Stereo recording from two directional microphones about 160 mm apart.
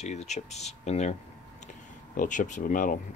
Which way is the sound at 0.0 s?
45° left (ahead or behind).